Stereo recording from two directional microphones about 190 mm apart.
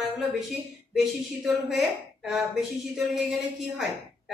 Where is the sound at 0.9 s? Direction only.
Centre (ahead or behind).